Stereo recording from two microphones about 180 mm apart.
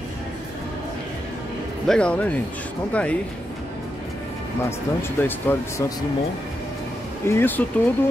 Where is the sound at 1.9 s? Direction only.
5° left (ahead or behind).